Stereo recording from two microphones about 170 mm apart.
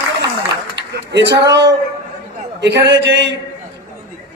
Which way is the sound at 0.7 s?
90° right.